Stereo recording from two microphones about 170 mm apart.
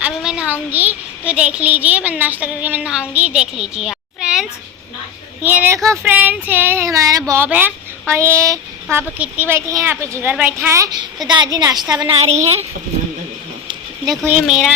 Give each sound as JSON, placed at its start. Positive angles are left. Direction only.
{"t": 0.0, "sound": "child singing", "side_deg": -5}
{"t": 0.7, "sound": "a child's voice", "side_deg": -10}
{"t": 11.3, "sound": "a woman's voice", "side_deg": -25}
{"t": 12.0, "sound": "a woman's voice", "side_deg": -40}
{"t": 14.4, "sound": "speech", "side_deg": 0}